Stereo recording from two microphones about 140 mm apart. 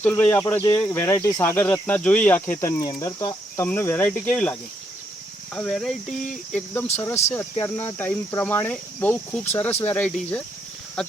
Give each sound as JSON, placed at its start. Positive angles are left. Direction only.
{"t": 0.0, "sound": "speech", "side_deg": 15}
{"t": 5.5, "sound": "speech", "side_deg": 5}